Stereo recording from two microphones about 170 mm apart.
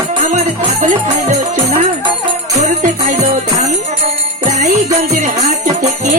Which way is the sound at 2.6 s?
45° right (ahead or behind).